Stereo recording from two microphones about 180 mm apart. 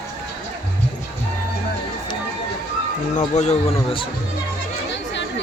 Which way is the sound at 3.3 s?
40° left (ahead or behind).